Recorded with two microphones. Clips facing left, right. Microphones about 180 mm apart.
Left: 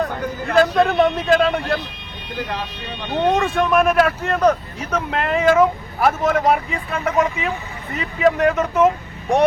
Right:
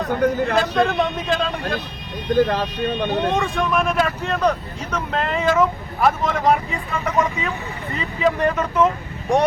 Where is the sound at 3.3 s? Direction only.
Centre (ahead or behind).